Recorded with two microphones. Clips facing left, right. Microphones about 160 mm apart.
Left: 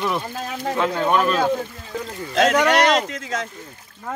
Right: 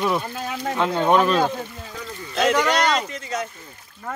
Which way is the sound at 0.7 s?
20° right (ahead or behind).